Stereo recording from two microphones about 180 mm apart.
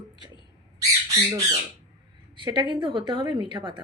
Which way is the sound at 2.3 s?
25° right (ahead or behind).